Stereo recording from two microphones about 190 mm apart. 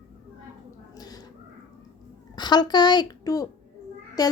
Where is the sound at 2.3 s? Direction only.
20° left (ahead or behind).